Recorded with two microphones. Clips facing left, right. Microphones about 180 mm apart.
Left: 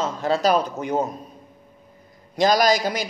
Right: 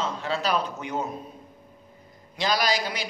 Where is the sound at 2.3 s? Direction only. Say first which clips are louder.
Left 7 dB; 45° left (ahead or behind).